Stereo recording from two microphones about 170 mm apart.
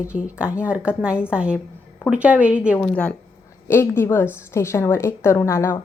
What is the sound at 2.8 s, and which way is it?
A woman's voice, 10° left (ahead or behind).